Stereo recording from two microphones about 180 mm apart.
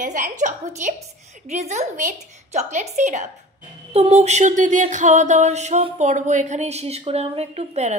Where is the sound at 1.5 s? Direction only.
40° right (ahead or behind).